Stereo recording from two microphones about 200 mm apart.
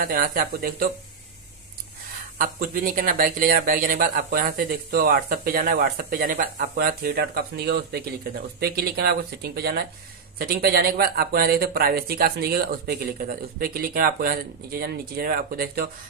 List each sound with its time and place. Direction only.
0.0 s speech: 45° right (ahead or behind)
2.3 s speech: 45° right (ahead or behind)